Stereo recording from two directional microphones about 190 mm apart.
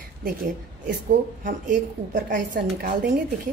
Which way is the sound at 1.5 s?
45° right (ahead or behind).